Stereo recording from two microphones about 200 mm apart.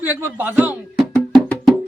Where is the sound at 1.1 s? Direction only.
Centre (ahead or behind).